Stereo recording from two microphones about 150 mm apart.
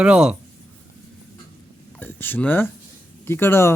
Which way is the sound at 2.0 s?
15° left (ahead or behind).